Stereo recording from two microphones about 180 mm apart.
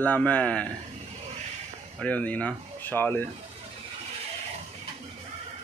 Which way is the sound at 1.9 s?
10° left (ahead or behind).